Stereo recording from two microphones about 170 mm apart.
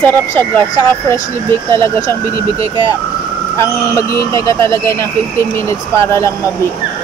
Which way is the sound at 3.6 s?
20° left (ahead or behind).